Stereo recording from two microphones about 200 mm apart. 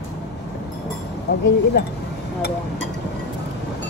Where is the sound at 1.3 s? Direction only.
55° left (ahead or behind).